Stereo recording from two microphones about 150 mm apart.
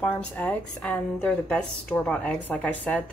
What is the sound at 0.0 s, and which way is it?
A woman's voice, 10° left (ahead or behind).